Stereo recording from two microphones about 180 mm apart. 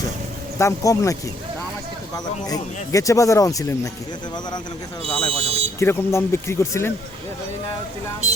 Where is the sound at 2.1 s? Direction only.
20° left (ahead or behind).